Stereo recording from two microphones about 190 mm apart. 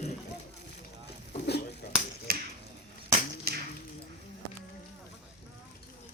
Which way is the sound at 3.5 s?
55° right (ahead or behind).